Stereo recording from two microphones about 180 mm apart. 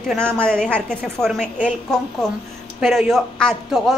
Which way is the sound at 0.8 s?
Centre (ahead or behind).